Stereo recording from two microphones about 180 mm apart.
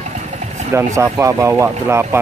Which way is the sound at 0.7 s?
15° right (ahead or behind).